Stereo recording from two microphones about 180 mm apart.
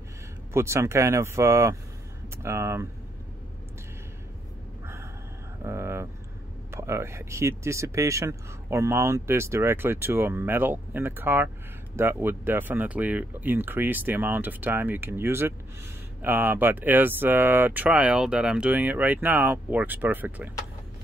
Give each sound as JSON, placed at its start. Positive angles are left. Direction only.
{"t": 0.5, "sound": "speech", "side_deg": -15}
{"t": 5.6, "sound": "a sound", "side_deg": -15}
{"t": 6.7, "sound": "speech", "side_deg": -15}